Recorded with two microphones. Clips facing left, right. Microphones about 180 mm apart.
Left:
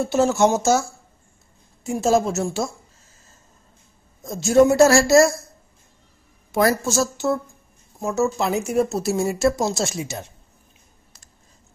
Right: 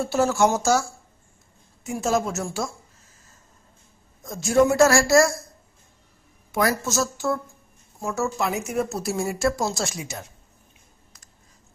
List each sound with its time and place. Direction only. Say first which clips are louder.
0.0 s speech: left 3 dB; 20° left (ahead or behind)
4.2 s speech: left 4 dB; 25° left (ahead or behind)
6.5 s speech: left 4 dB; 30° left (ahead or behind)